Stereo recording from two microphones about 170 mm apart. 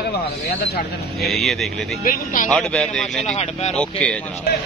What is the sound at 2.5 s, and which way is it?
Speech, 5° left (ahead or behind).